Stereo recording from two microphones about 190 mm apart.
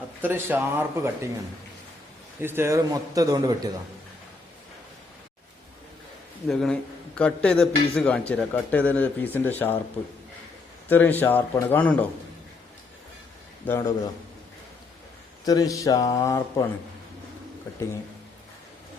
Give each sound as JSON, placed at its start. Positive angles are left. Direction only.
{"t": 0.2, "sound": "a man's voice", "side_deg": -10}
{"t": 2.4, "sound": "a man's voice", "side_deg": -10}
{"t": 6.5, "sound": "a man's voice", "side_deg": 0}
{"t": 10.8, "sound": "a man's voice", "side_deg": 10}
{"t": 13.7, "sound": "a man's voice", "side_deg": 15}
{"t": 15.4, "sound": "speech", "side_deg": 20}